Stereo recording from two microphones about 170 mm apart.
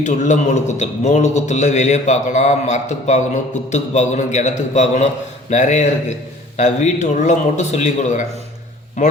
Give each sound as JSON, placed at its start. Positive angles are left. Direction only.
{"t": 0.0, "sound": "a man's voice", "side_deg": 45}